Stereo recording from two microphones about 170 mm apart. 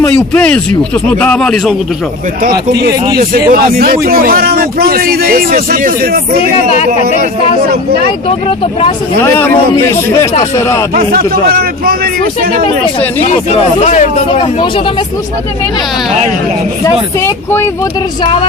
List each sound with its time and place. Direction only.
0.3 s speech: 5° left (ahead or behind)
2.4 s a man's voice: 60° right (ahead or behind)
9.2 s speech: 10° left (ahead or behind)
10.9 s a man's voice: 60° right (ahead or behind)
13.2 s speech: 40° left (ahead or behind)
16.8 s speech: 15° left (ahead or behind)